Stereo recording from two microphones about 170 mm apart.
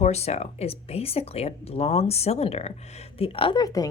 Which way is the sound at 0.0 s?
40° left (ahead or behind).